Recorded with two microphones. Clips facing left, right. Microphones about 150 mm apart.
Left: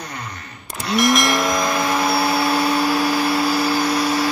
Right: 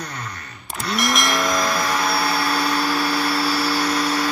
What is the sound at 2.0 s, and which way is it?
Vacuum cleaner, 20° left (ahead or behind).